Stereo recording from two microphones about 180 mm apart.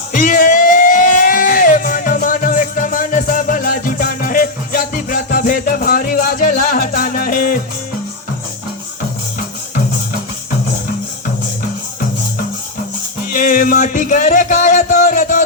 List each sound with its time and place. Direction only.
0.1 s music: 45° left (ahead or behind)
13.3 s music: 50° left (ahead or behind)